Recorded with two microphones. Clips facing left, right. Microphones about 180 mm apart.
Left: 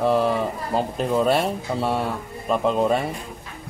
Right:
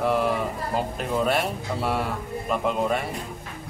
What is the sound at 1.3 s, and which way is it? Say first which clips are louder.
Speech: left 4 dB; 30° left (ahead or behind).